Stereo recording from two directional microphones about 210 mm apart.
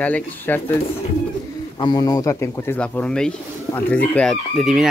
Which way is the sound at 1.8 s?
20° left (ahead or behind).